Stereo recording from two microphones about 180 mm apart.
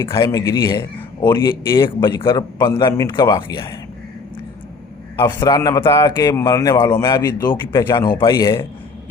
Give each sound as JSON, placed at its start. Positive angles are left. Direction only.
{"t": 0.0, "sound": "speech", "side_deg": 25}
{"t": 5.1, "sound": "speech", "side_deg": 25}